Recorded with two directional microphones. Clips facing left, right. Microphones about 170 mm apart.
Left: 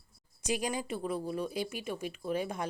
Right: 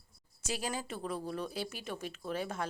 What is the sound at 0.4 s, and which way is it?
Speech, 15° left (ahead or behind).